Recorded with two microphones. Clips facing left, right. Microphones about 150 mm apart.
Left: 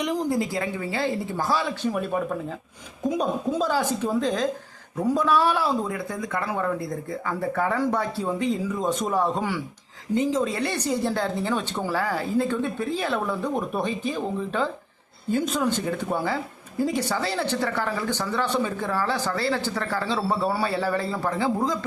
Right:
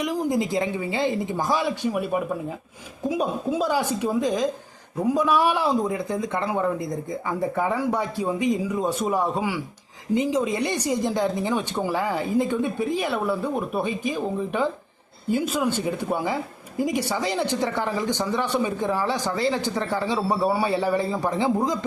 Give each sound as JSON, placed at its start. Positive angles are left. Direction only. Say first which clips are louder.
{"t": 0.0, "sound": "speech", "louder": "even", "side_deg": -5}
{"t": 0.3, "sound": "speech", "louder": "right 2 dB", "side_deg": -20}